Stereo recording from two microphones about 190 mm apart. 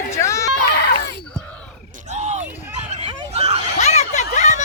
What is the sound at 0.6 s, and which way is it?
Screaming, 55° left (ahead or behind).